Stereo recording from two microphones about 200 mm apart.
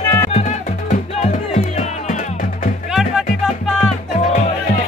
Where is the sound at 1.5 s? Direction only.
35° left (ahead or behind).